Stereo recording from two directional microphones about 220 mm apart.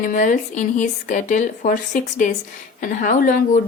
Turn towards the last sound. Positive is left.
turn(degrees=35)  # may be behind; listen again after turning